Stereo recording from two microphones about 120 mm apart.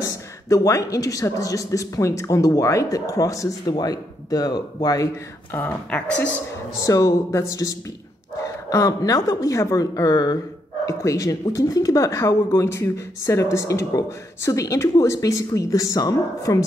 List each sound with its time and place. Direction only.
0.5 s speech: 25° left (ahead or behind)
5.6 s speech: 10° left (ahead or behind)
6.8 s speech: 30° left (ahead or behind)